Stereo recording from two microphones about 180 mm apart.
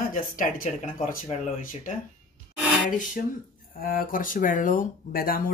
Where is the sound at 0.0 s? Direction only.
50° left (ahead or behind).